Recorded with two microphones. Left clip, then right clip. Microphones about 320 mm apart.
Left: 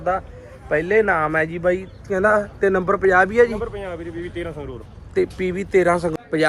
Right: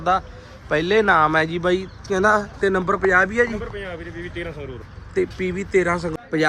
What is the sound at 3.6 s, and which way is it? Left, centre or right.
Speech, centre.